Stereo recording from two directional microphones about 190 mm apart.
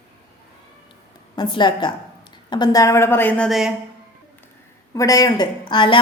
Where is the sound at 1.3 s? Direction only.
25° left (ahead or behind); by 3.7 s centre (ahead or behind).